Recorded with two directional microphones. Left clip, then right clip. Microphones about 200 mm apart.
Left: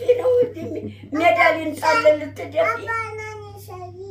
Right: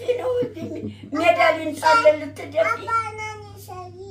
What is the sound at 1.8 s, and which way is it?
A child's voice, 10° right (ahead or behind).